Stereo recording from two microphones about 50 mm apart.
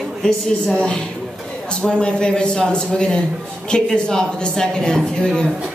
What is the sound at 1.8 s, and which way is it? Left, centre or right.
Speech, centre.